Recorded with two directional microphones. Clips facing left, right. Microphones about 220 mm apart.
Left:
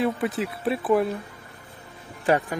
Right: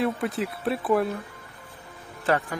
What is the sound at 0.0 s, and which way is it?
Speech, centre (ahead or behind).